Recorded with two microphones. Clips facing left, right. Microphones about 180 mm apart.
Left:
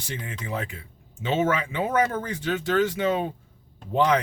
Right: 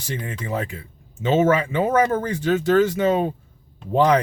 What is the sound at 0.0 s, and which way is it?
Speech, 40° right (ahead or behind).